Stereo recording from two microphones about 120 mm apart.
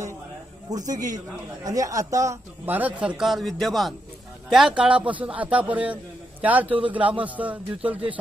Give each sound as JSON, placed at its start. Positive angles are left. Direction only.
{"t": 0.7, "sound": "speech", "side_deg": -30}
{"t": 2.7, "sound": "a man's voice", "side_deg": -10}